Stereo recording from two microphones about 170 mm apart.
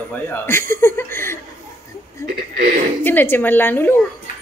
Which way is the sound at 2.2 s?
60° right (ahead or behind).